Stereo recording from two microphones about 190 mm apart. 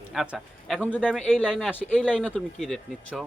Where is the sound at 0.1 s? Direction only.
Centre (ahead or behind).